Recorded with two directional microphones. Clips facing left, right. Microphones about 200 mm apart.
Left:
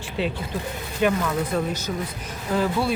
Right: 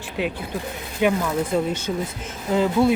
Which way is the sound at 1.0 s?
15° right (ahead or behind).